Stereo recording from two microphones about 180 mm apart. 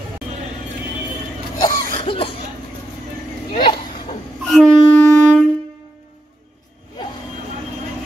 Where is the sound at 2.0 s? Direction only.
30° left (ahead or behind).